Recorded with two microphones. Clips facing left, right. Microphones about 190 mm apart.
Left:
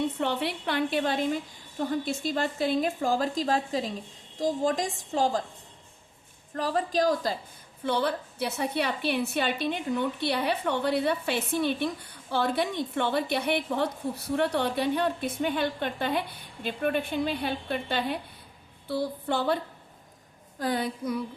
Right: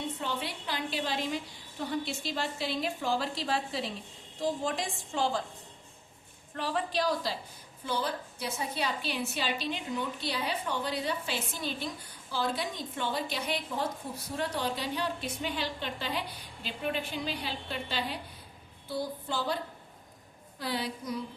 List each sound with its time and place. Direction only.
0.2 s a woman's voice: 65° left (ahead or behind); by 5.4 s 40° left (ahead or behind)
6.5 s a woman's voice: 40° left (ahead or behind)
7.9 s a woman's voice: 65° left (ahead or behind)
20.6 s a woman's voice: 50° left (ahead or behind)